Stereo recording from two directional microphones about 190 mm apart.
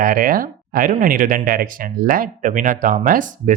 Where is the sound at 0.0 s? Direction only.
50° right (ahead or behind).